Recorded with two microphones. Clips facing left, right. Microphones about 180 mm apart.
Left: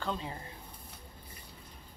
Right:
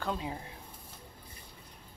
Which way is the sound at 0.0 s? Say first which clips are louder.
Right 2 dB; 10° right (ahead or behind).